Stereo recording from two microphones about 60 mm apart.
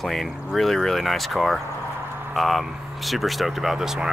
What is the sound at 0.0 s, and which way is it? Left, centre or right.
Speech, centre.